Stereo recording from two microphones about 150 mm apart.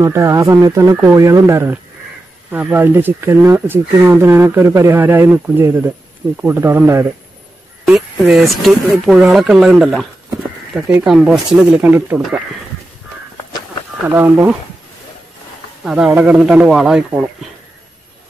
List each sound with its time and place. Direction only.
0.0 s speech: 20° right (ahead or behind)
7.8 s speech: centre (ahead or behind)
11.1 s speech: centre (ahead or behind)
14.0 s speech: 15° right (ahead or behind)
15.8 s speech: 5° right (ahead or behind)